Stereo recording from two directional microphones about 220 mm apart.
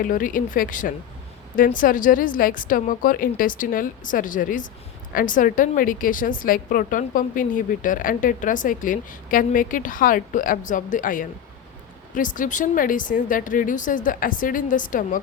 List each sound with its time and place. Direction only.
0.0 s a woman's voice: 40° left (ahead or behind)